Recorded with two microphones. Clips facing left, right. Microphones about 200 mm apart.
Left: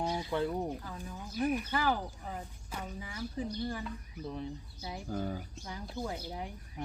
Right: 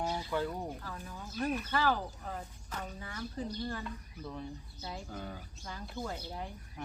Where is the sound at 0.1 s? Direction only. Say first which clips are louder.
Left 2 dB; 20° left (ahead or behind).